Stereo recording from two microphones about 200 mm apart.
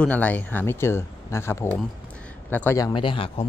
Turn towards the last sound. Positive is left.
turn(degrees=25)  # may be behind; listen again after turning